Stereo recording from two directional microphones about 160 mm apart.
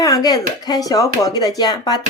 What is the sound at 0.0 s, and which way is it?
A woman's voice, 25° left (ahead or behind).